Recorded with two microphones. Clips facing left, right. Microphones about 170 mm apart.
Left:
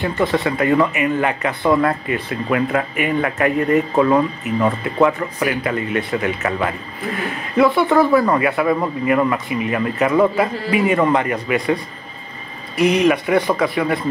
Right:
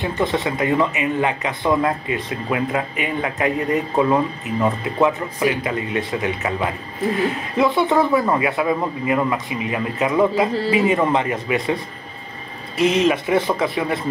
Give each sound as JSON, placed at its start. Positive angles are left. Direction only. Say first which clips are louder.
{"t": 0.0, "sound": "speech", "louder": "left 2 dB", "side_deg": -20}